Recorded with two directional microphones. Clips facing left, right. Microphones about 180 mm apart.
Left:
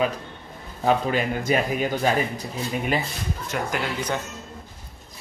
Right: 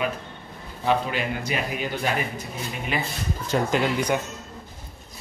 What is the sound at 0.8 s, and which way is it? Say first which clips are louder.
A man's voice: left 2 dB; 45° left (ahead or behind).